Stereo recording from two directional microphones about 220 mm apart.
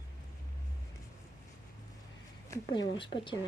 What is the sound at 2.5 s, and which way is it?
Speech, 20° left (ahead or behind).